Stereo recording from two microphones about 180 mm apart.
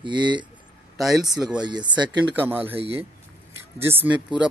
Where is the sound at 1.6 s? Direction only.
25° right (ahead or behind).